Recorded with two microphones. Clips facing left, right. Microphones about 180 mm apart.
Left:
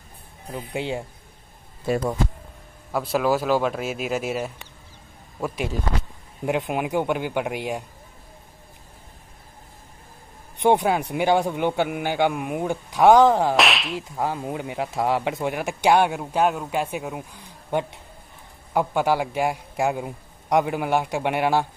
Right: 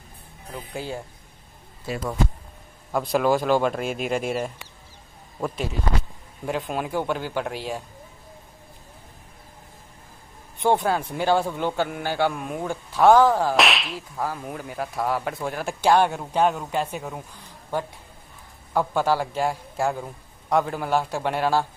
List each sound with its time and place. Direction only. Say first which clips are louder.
0.6 s speech: left 4 dB; 20° left (ahead or behind)
1.9 s speech: left 7 dB; 55° left (ahead or behind)
2.9 s speech: right 1 dB; 5° left (ahead or behind)
6.4 s speech: left 3 dB; 15° left (ahead or behind)
10.6 s speech: left 2 dB; 20° left (ahead or behind)
13.6 s whip: left 1 dB; centre (ahead or behind)
14.1 s speech: left 3 dB; 25° left (ahead or behind)